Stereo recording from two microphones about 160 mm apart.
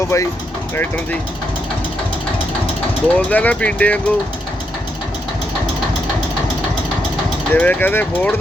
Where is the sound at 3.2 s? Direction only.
10° left (ahead or behind).